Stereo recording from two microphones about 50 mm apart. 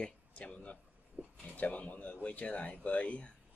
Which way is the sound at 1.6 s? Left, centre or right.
Left.